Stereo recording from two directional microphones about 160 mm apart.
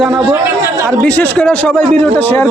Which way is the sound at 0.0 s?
5° right (ahead or behind).